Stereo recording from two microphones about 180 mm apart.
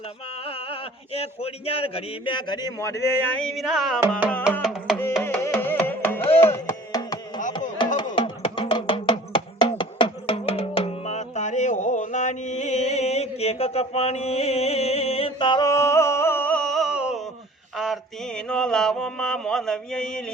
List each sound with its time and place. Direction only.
0.4 s speech: 30° left (ahead or behind); by 3.2 s 15° left (ahead or behind)
3.4 s music: centre (ahead or behind)
4.9 s carnatic music: 10° left (ahead or behind)
6.4 s music: 15° left (ahead or behind)
8.1 s music: 30° left (ahead or behind); by 17.2 s 5° right (ahead or behind)
17.7 s mantra: centre (ahead or behind)